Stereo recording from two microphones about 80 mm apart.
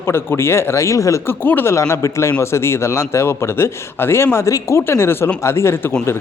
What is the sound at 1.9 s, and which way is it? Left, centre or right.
A man's voice, left.